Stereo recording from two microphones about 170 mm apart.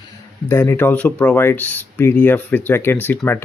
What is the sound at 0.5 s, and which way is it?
Speech, 15° left (ahead or behind).